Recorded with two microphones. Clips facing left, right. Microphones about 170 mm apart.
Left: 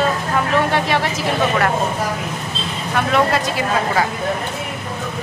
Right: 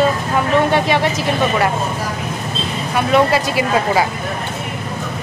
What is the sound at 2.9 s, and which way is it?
Speech, 5° right (ahead or behind).